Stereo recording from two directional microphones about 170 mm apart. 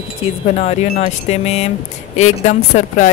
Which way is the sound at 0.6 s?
40° left (ahead or behind).